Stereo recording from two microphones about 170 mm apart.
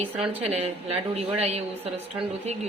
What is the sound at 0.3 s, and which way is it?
Speech, 35° right (ahead or behind).